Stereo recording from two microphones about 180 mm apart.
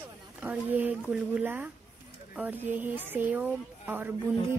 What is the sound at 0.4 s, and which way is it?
Speech, 10° right (ahead or behind).